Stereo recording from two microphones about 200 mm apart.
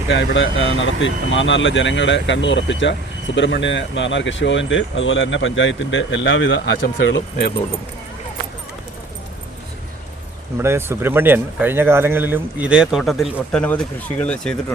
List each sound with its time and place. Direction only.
0.1 s speech: 65° left (ahead or behind)
10.6 s speech: 10° right (ahead or behind); by 14.5 s 5° left (ahead or behind)